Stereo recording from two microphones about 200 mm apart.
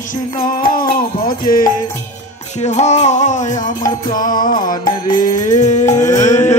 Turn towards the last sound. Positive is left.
turn(degrees=15)  # may be behind; listen again after turning